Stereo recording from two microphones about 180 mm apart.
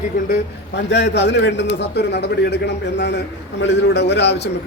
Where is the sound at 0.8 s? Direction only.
75° left (ahead or behind).